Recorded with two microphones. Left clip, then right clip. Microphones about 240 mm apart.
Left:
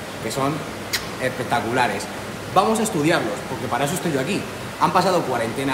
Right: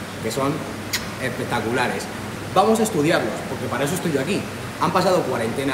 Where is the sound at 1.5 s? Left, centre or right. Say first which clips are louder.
Left 2 dB; centre.